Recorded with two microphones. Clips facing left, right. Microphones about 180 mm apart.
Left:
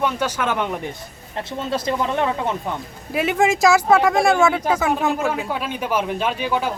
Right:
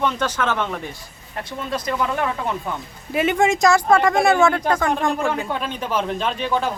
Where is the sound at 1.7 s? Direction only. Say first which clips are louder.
Left 1 dB; 25° left (ahead or behind).